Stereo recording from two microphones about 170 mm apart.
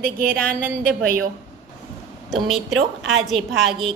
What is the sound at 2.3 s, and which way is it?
A woman's voice, centre (ahead or behind).